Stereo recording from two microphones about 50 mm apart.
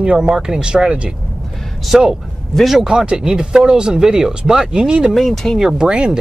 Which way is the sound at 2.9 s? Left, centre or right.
Centre.